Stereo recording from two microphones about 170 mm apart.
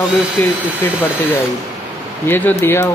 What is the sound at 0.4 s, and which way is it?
Speech, 10° left (ahead or behind).